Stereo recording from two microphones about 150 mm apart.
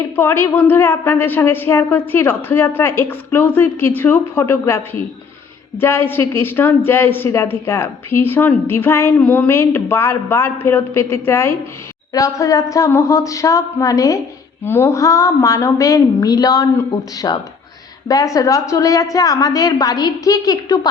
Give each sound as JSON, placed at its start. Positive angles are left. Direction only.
{"t": 0.2, "sound": "a woman's voice", "side_deg": 15}